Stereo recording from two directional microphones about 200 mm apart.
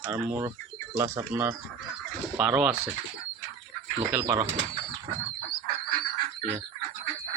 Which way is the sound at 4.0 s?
15° right (ahead or behind).